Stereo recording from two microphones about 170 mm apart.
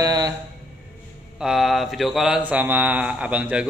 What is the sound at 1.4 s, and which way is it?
A man's voice, centre (ahead or behind).